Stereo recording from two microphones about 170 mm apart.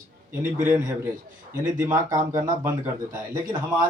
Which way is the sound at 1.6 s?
20° right (ahead or behind).